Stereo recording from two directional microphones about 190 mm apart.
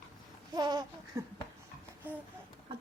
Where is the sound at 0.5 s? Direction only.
20° right (ahead or behind).